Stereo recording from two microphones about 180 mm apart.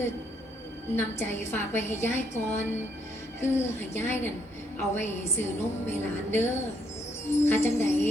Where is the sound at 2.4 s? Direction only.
40° left (ahead or behind).